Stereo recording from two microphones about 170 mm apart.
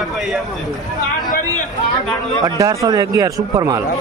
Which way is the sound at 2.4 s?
20° right (ahead or behind).